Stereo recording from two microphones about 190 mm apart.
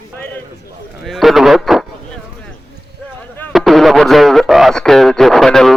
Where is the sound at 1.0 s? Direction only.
Centre (ahead or behind).